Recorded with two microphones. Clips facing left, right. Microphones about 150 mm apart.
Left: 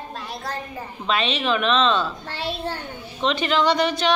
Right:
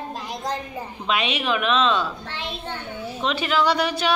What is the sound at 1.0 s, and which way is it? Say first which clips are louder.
A man's voice: left 1 dB; 10° right (ahead or behind).